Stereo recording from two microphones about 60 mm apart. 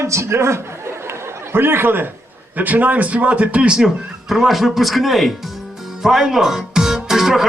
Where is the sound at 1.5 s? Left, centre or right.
Right.